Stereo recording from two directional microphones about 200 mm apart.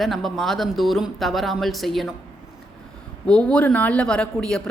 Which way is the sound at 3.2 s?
5° left (ahead or behind).